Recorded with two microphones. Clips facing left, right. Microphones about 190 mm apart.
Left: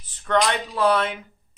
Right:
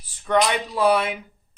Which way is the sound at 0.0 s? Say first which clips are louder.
Right 1 dB; 10° right (ahead or behind).